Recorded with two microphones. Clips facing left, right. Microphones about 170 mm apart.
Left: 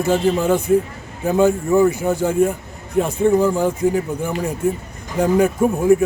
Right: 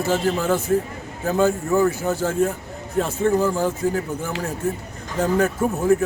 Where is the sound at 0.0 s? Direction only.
15° left (ahead or behind).